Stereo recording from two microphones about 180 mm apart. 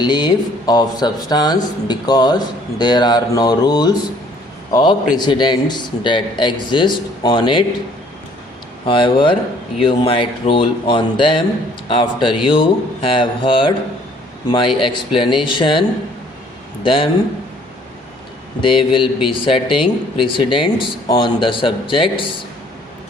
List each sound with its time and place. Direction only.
0.0 s speech: 25° left (ahead or behind)
8.9 s speech: 25° left (ahead or behind)
16.8 s speech: 30° left (ahead or behind)
18.6 s speech: 30° left (ahead or behind)